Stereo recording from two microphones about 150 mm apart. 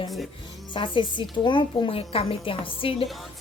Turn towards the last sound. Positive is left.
turn(degrees=35)  # may be behind; listen again after turning